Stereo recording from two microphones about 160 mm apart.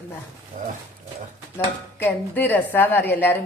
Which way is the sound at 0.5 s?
50° right (ahead or behind).